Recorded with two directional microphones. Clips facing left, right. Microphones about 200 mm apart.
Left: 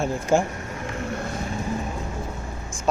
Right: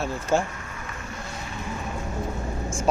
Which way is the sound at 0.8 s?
65° left (ahead or behind).